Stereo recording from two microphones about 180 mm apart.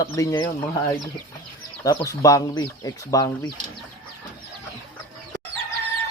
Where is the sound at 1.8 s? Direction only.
20° left (ahead or behind).